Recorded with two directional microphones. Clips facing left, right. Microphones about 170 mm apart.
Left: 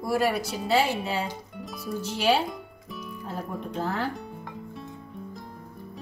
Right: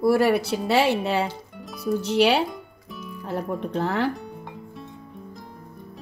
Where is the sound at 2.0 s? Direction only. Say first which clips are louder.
Right 4 dB; 70° right (ahead or behind).